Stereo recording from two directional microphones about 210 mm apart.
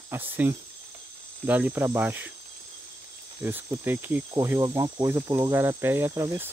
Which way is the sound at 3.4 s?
10° right (ahead or behind).